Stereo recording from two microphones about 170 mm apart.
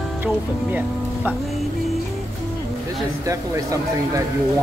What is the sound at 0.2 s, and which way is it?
Speech, 10° right (ahead or behind).